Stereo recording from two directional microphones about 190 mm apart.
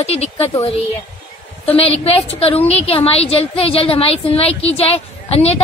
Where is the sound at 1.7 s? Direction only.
30° left (ahead or behind).